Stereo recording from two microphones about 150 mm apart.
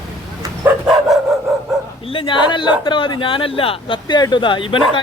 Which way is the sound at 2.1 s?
35° left (ahead or behind).